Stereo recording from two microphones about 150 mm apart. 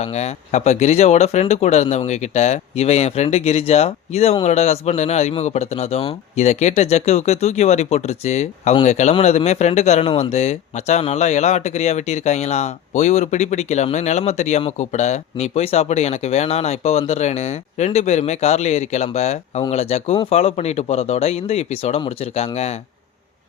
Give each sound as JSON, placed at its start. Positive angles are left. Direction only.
{"t": 0.0, "sound": "speech", "side_deg": 45}